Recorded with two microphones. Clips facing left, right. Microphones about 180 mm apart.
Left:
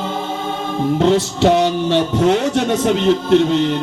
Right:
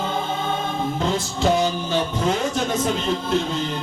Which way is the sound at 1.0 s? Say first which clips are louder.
Left 9 dB; 70° left (ahead or behind).